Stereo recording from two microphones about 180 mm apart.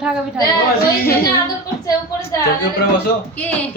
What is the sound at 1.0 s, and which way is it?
Speech, 15° left (ahead or behind).